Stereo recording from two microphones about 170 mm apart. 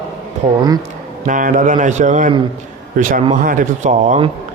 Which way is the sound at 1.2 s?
50° right (ahead or behind).